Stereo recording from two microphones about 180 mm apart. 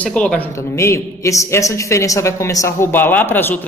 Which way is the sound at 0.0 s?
5° left (ahead or behind).